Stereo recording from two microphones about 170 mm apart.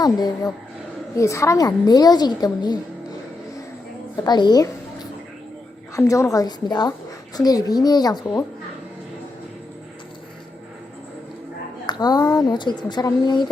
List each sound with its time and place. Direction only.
0.0 s speech: 25° left (ahead or behind)
4.2 s speech: 25° left (ahead or behind)
5.9 s speech: 20° left (ahead or behind)
11.9 s speech: 25° left (ahead or behind)